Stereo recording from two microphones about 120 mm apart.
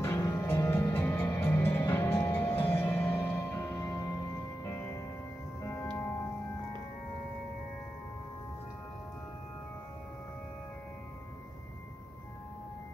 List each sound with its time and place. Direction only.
0.0 s music: 25° left (ahead or behind)